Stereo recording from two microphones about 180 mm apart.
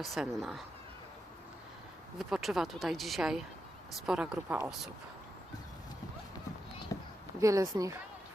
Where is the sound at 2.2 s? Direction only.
Centre (ahead or behind).